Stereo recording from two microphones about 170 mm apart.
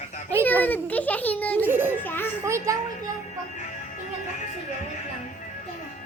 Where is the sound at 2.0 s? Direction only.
10° left (ahead or behind).